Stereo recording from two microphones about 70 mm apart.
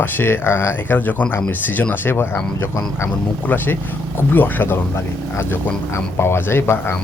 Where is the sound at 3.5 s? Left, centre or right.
Left.